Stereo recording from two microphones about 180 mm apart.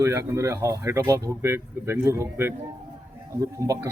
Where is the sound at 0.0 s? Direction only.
15° right (ahead or behind).